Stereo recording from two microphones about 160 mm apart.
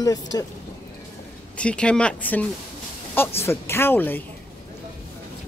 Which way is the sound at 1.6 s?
5° left (ahead or behind).